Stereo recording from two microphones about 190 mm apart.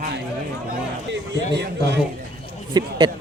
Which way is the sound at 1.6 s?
60° right (ahead or behind).